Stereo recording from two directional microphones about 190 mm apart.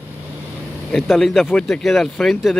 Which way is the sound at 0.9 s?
Centre (ahead or behind).